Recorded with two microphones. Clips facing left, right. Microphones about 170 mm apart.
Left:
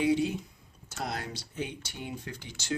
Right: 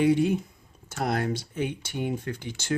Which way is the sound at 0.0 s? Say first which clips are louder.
Right 5 dB; 55° right (ahead or behind).